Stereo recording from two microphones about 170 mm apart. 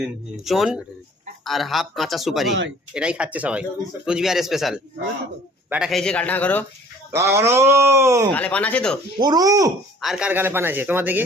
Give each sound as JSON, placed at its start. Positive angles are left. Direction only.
{"t": 0.0, "sound": "speech", "side_deg": 0}
{"t": 2.5, "sound": "speech", "side_deg": -90}
{"t": 2.9, "sound": "a man's voice", "side_deg": -5}
{"t": 5.9, "sound": "speech", "side_deg": 5}
{"t": 7.2, "sound": "speech", "side_deg": -15}
{"t": 8.3, "sound": "speech", "side_deg": 10}
{"t": 9.1, "sound": "speech", "side_deg": -25}
{"t": 10.0, "sound": "speech", "side_deg": -5}